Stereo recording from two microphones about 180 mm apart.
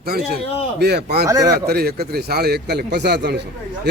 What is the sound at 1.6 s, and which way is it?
A man's voice, 60° right (ahead or behind).